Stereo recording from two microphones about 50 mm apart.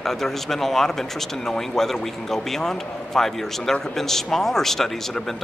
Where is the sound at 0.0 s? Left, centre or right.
Centre.